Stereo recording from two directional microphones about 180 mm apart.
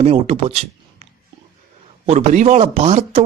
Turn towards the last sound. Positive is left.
turn(degrees=-40)  # may be behind; listen again after turning